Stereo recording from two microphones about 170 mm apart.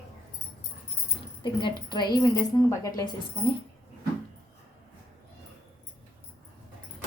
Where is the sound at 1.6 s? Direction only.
25° left (ahead or behind).